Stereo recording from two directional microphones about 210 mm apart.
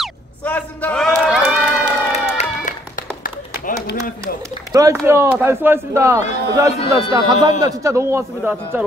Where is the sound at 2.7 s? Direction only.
35° left (ahead or behind).